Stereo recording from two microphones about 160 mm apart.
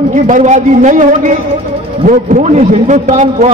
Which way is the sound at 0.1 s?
50° right (ahead or behind).